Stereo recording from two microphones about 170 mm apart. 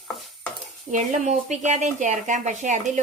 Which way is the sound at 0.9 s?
45° right (ahead or behind).